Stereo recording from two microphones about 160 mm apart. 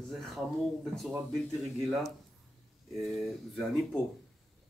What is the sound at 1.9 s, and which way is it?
Speech, centre (ahead or behind).